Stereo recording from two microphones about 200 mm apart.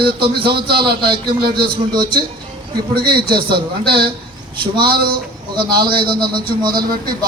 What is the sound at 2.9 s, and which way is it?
Speech, 50° right (ahead or behind).